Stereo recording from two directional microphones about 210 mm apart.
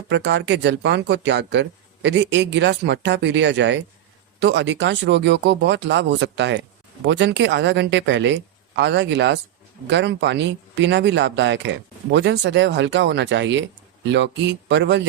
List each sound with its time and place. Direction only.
0.1 s speech: 55° right (ahead or behind)